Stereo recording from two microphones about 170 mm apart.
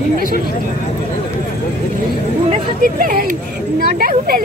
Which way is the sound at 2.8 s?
55° right (ahead or behind).